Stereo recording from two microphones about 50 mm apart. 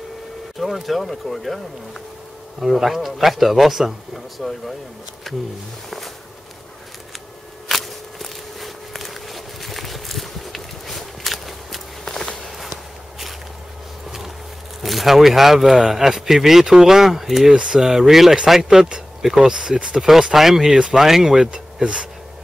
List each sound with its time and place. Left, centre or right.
0.6 s speech: centre
2.6 s speech: centre
7.6 s a sound: centre
12.4 s walk: centre
14.8 s speech: centre